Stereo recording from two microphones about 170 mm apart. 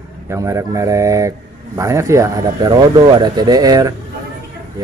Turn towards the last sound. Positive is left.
turn(degrees=-20)  # may be behind; listen again after turning